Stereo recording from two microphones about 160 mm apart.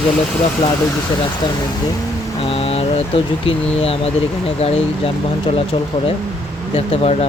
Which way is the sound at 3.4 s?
40° left (ahead or behind).